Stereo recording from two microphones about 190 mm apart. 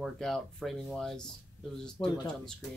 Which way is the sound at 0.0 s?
Centre (ahead or behind).